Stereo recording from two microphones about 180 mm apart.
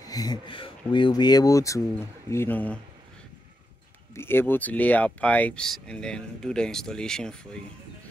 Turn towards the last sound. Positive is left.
turn(degrees=5)  # may be behind; listen again after turning